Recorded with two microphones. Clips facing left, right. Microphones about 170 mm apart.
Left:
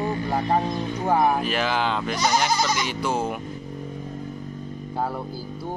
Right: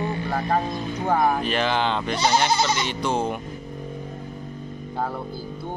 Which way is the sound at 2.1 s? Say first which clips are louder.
Right 2 dB; 25° right (ahead or behind).